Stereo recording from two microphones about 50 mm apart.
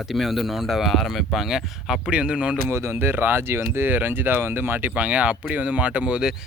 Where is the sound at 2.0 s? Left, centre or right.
Centre.